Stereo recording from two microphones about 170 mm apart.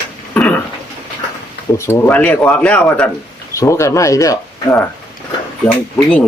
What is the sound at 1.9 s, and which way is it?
Speech, 10° left (ahead or behind).